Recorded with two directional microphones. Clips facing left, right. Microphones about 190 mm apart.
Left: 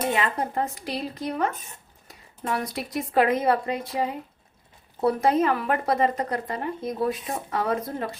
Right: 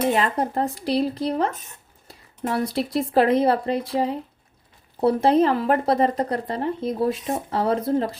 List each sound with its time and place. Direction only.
0.1 s speech: 35° right (ahead or behind)